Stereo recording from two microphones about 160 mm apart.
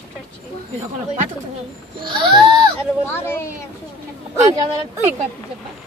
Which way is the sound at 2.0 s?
30° right (ahead or behind).